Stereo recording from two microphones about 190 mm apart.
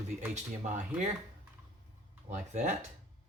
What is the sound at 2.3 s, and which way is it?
Speech, 40° right (ahead or behind).